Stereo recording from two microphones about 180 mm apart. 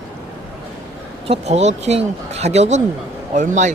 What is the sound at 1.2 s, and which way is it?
Speech, 35° right (ahead or behind).